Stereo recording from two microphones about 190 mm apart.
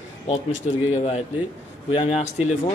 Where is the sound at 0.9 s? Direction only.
35° left (ahead or behind).